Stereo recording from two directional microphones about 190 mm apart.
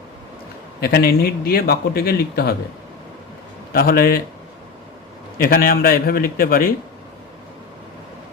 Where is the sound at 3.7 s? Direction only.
50° left (ahead or behind).